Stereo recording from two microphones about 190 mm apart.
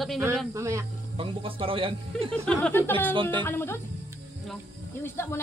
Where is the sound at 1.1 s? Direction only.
30° right (ahead or behind).